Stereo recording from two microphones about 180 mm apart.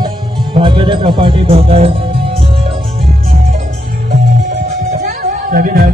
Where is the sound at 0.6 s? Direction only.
30° right (ahead or behind).